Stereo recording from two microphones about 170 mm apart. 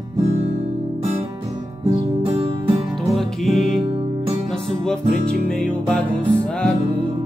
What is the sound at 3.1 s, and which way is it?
Music, centre (ahead or behind).